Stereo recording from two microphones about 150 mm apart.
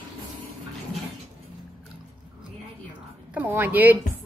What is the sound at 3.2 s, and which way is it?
Speech, 10° right (ahead or behind).